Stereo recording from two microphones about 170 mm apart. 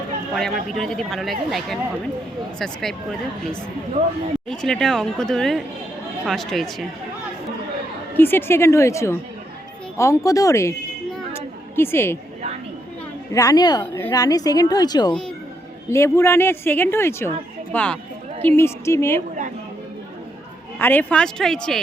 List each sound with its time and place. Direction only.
0.3 s speech: centre (ahead or behind)
4.4 s speech: 5° left (ahead or behind)
8.1 s a woman's voice: 10° left (ahead or behind)
11.3 s a sound: 15° left (ahead or behind)
13.3 s a woman's voice: 20° left (ahead or behind)
20.7 s speech: 10° left (ahead or behind)